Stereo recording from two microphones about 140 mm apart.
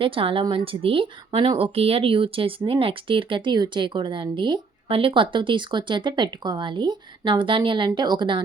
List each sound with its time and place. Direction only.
0.0 s speech: 40° right (ahead or behind)